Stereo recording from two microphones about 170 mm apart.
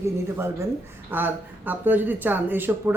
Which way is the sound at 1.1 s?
10° right (ahead or behind).